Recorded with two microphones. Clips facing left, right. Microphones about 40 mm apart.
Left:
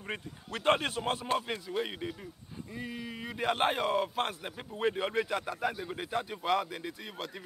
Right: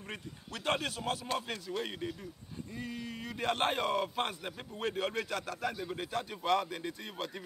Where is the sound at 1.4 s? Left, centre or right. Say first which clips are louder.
Left 3 dB; centre.